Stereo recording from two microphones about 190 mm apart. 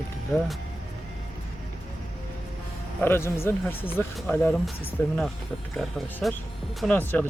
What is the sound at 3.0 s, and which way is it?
Speech, 10° left (ahead or behind).